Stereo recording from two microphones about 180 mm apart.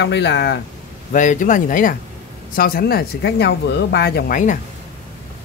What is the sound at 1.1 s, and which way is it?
Speech, 45° left (ahead or behind).